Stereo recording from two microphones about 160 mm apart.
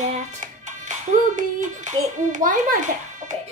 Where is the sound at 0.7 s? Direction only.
50° right (ahead or behind).